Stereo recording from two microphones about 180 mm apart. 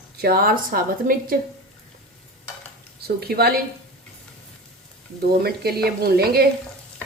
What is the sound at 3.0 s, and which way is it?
Speech, 60° right (ahead or behind).